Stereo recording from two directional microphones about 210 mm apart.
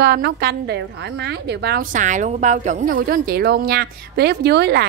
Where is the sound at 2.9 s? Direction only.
50° right (ahead or behind).